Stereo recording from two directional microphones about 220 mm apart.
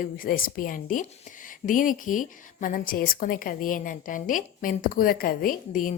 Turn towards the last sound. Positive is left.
turn(degrees=40)  # may be behind; listen again after turning